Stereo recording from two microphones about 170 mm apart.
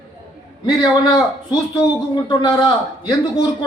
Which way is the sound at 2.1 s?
25° left (ahead or behind).